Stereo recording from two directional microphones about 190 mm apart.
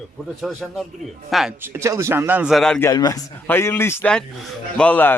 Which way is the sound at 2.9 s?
20° left (ahead or behind).